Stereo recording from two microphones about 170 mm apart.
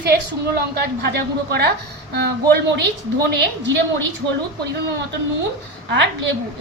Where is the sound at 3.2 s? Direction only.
90° right.